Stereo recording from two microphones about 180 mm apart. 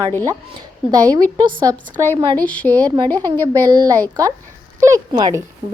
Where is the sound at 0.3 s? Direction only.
20° right (ahead or behind).